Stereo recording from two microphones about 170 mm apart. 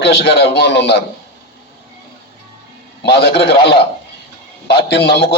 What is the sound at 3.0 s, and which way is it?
Speech, 75° left (ahead or behind).